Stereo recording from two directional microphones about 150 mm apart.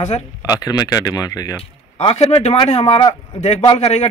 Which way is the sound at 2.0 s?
40° left (ahead or behind).